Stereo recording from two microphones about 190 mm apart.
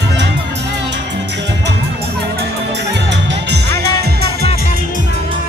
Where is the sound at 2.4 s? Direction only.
65° right (ahead or behind).